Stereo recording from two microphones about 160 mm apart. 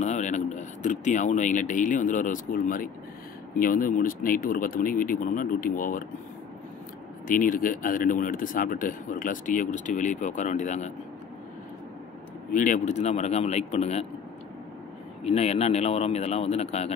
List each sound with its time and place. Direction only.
0.0 s speech: 50° left (ahead or behind)
7.2 s speech: 60° left (ahead or behind)
12.5 s a man's voice: 55° left (ahead or behind)
15.2 s speech: 40° left (ahead or behind)